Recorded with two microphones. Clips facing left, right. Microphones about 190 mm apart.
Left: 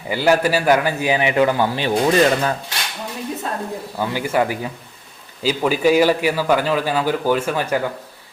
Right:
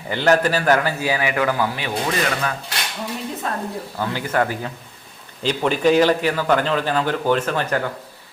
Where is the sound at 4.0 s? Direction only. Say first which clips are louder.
Left 2 dB; 10° left (ahead or behind).